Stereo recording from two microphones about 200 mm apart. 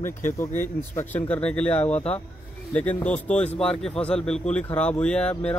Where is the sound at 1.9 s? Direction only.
30° left (ahead or behind).